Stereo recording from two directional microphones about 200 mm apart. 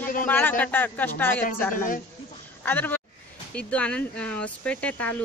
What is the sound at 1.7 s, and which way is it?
Speech, 45° left (ahead or behind).